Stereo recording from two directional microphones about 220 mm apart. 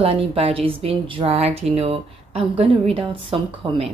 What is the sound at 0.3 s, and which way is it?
Speech, 25° right (ahead or behind).